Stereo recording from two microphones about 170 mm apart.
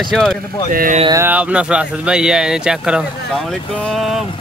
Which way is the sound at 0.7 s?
50° right (ahead or behind).